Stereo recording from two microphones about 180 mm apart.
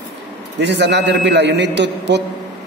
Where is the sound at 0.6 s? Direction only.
75° right (ahead or behind).